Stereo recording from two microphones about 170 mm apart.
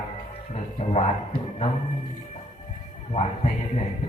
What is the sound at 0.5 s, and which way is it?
Music, 40° left (ahead or behind).